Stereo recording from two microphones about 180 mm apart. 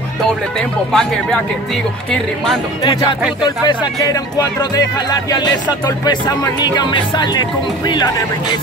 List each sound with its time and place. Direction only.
0.6 s speech: 5° left (ahead or behind)
2.8 s speech: 25° left (ahead or behind)